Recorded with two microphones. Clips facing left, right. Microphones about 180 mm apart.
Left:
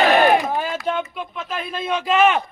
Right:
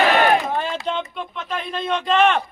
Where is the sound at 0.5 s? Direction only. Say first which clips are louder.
Left 1 dB; 5° left (ahead or behind).